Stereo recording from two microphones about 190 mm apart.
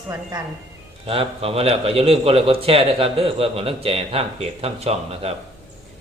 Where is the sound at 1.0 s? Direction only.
30° right (ahead or behind).